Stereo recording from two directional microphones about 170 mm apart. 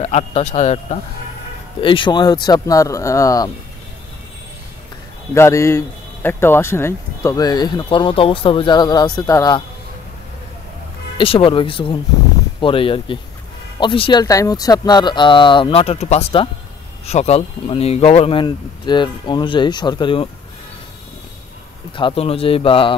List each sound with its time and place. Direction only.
0.0 s speech: 40° left (ahead or behind)
1.8 s a man's voice: 30° left (ahead or behind)
5.3 s a man's voice: 15° left (ahead or behind)
11.1 s a man's voice: 30° left (ahead or behind)
14.2 s a man's voice: 20° left (ahead or behind)
21.9 s speech: 30° left (ahead or behind)